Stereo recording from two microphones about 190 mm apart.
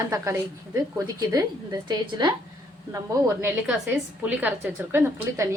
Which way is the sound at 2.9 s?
10° right (ahead or behind).